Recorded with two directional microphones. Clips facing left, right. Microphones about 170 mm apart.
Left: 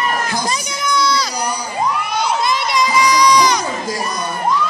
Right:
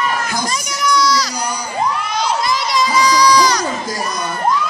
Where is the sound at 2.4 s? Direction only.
20° left (ahead or behind).